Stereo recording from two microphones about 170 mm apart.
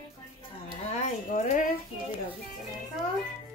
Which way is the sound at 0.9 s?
45° left (ahead or behind).